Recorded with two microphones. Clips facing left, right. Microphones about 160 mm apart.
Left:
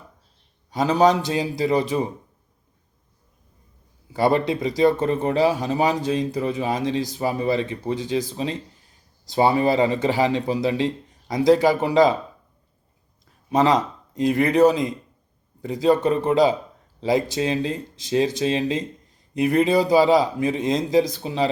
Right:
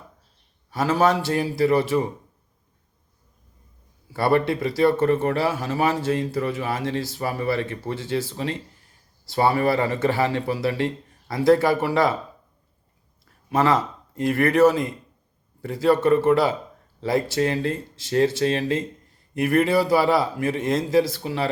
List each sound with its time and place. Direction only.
0.7 s speech: 20° left (ahead or behind)
4.1 s a man's voice: 20° left (ahead or behind)
13.5 s a man's voice: 20° left (ahead or behind)